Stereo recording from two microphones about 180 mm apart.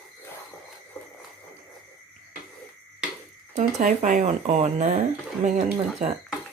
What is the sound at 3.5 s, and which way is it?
Speech, 45° right (ahead or behind).